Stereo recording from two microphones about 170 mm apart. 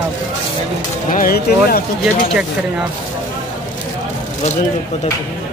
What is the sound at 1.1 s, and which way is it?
Speech, 60° left (ahead or behind).